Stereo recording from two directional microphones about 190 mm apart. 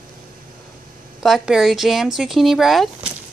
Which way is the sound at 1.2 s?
Centre (ahead or behind).